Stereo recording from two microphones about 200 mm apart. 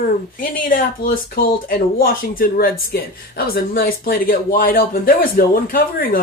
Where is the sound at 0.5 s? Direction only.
45° left (ahead or behind).